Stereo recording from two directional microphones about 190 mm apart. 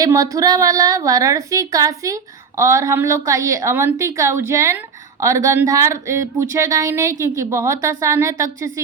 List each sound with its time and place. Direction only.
0.0 s a woman's voice: 20° right (ahead or behind)